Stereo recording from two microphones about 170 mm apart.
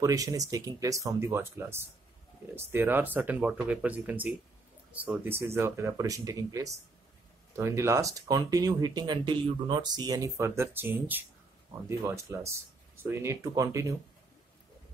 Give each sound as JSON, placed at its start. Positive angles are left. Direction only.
{"t": 0.0, "sound": "speech", "side_deg": -20}